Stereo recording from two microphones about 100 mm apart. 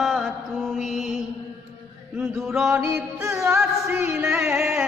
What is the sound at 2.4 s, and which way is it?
Music, 5° right (ahead or behind).